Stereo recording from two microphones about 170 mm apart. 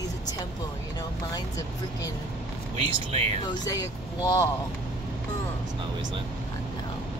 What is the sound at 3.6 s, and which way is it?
Speech, 20° left (ahead or behind).